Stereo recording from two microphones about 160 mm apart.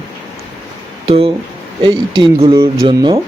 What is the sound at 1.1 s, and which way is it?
Speech, 35° right (ahead or behind).